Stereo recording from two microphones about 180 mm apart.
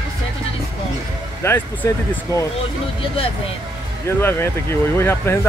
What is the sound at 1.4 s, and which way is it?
Speech, 15° left (ahead or behind).